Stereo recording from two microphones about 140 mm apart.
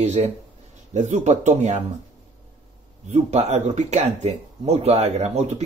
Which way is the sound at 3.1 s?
55° right (ahead or behind).